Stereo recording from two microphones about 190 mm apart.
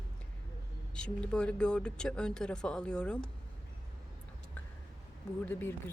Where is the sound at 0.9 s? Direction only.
5° left (ahead or behind).